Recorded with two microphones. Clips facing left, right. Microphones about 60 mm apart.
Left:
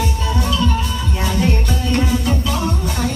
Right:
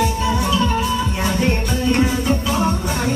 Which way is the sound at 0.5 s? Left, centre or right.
Centre.